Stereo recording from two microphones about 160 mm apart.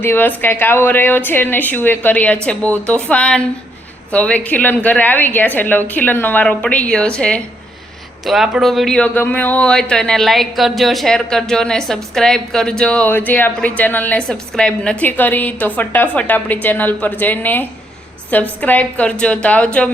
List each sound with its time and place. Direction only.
0.0 s speech: 15° left (ahead or behind)